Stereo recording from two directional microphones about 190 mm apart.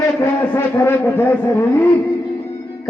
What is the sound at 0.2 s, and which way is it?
A man's voice, 15° left (ahead or behind).